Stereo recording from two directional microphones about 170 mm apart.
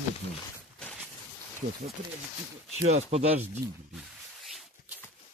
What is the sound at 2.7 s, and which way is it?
Speech, 40° right (ahead or behind).